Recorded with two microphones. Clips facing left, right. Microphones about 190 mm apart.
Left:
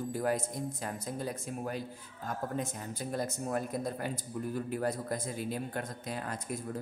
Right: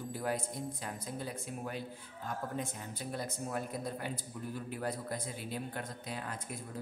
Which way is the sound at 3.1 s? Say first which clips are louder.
Left 5 dB; 45° left (ahead or behind).